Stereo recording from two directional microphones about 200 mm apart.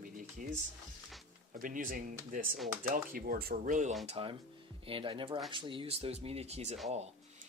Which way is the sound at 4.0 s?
30° right (ahead or behind).